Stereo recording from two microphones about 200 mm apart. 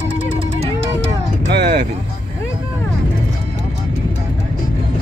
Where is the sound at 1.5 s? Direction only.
55° right (ahead or behind).